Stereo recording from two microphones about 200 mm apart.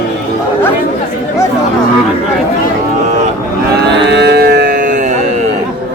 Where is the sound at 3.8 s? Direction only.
60° right (ahead or behind); by 5.1 s 40° right (ahead or behind).